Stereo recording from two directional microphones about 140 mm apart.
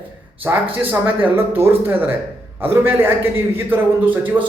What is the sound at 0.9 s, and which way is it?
A man's voice, 15° right (ahead or behind).